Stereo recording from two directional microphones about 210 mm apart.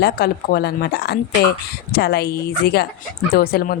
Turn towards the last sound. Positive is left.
turn(degrees=45)  # may be behind; listen again after turning